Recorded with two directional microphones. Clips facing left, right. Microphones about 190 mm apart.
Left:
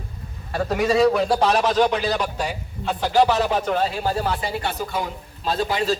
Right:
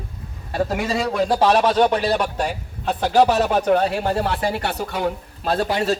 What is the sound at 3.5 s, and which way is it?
Speech, 55° right (ahead or behind).